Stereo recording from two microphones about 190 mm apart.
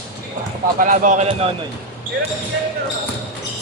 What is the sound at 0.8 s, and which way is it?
Speech, 40° right (ahead or behind).